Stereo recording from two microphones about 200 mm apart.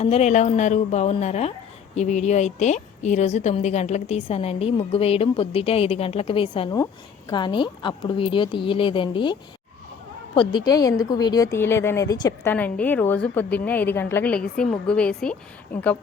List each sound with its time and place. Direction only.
0.0 s a woman's voice: 30° left (ahead or behind)
12.5 s a woman's voice: 10° left (ahead or behind)